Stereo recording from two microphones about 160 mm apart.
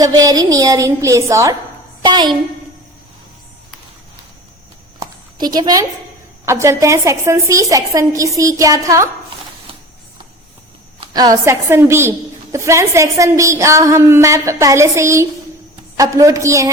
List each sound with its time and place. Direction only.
0.0 s a woman's voice: 25° right (ahead or behind)
4.9 s a sound: 25° right (ahead or behind)
6.4 s a woman's voice: 15° right (ahead or behind)
11.0 s a woman's voice: 25° right (ahead or behind)